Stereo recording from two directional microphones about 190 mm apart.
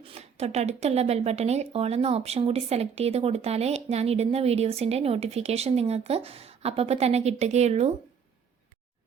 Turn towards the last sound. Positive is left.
turn(degrees=-35)  # may be behind; listen again after turning